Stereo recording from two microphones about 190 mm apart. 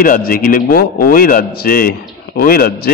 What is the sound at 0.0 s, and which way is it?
A man's voice, 50° left (ahead or behind).